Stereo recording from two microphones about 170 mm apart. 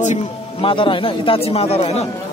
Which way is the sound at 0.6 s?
30° left (ahead or behind).